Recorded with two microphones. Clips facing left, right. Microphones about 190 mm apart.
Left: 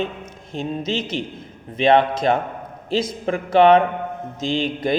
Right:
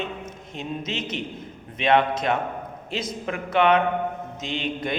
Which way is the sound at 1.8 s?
35° left (ahead or behind).